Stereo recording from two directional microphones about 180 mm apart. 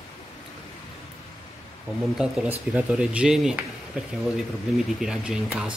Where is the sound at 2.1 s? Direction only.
5° right (ahead or behind).